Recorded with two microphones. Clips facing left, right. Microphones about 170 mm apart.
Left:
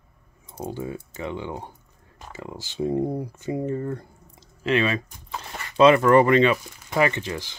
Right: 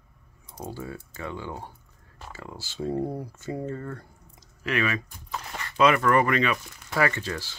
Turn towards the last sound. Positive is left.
turn(degrees=15)  # may be behind; listen again after turning